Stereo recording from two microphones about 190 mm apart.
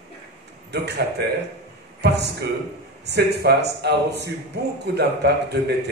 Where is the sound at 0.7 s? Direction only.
60° right (ahead or behind).